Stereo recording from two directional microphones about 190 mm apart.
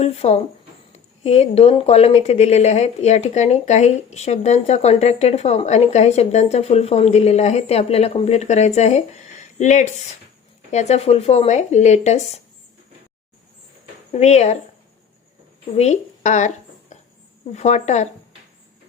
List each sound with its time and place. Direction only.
0.0 s speech: 35° left (ahead or behind)
14.1 s speech: 35° left (ahead or behind)
15.7 s speech: 35° left (ahead or behind)